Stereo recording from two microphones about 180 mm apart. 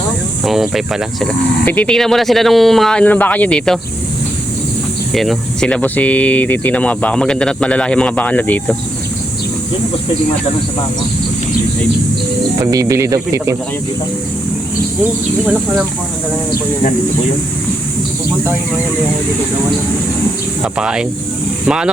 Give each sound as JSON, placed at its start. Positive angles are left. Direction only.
{"t": 0.4, "sound": "speech", "side_deg": 0}
{"t": 5.1, "sound": "speech", "side_deg": 0}
{"t": 12.5, "sound": "speech", "side_deg": -20}
{"t": 20.7, "sound": "speech", "side_deg": -5}